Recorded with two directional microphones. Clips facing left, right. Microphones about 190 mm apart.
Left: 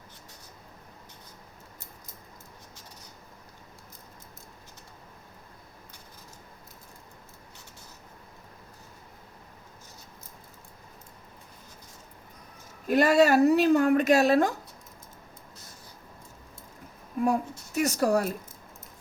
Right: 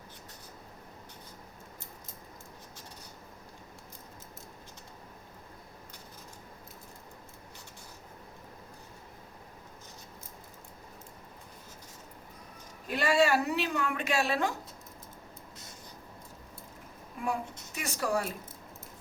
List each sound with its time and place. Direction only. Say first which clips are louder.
12.9 s a woman's voice: left 6 dB; 40° left (ahead or behind)
17.2 s a sound: left 8 dB; 40° left (ahead or behind)
17.7 s a woman's voice: left 8 dB; 40° left (ahead or behind)